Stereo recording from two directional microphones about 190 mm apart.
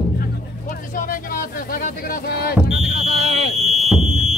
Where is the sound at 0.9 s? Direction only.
45° left (ahead or behind).